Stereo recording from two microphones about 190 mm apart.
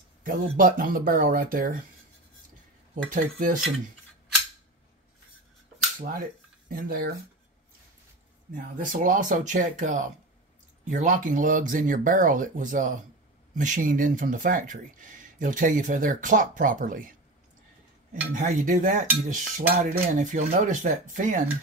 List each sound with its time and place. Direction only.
0.2 s speech: 45° right (ahead or behind)
3.1 s speech: 45° right (ahead or behind)
5.9 s speech: 50° right (ahead or behind)
8.5 s speech: 45° right (ahead or behind)
18.3 s speech: 45° right (ahead or behind)
19.2 s cutlery: 40° right (ahead or behind)